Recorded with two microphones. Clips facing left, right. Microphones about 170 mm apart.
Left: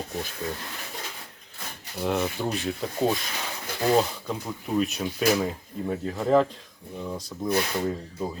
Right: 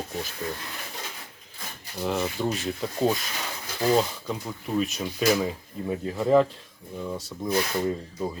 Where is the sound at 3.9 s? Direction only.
5° left (ahead or behind).